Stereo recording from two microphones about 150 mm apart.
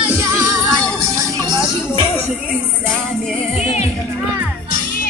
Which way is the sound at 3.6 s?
45° left (ahead or behind).